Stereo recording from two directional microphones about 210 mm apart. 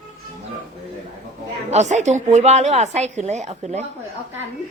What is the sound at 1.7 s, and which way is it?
A woman's voice, 35° right (ahead or behind).